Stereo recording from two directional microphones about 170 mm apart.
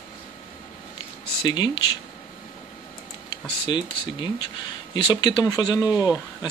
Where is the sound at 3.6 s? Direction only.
25° left (ahead or behind).